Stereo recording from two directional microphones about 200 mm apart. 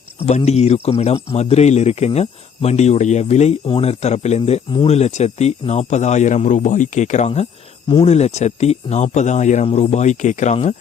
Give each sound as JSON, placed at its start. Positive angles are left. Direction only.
{"t": 0.3, "sound": "a man's voice", "side_deg": 35}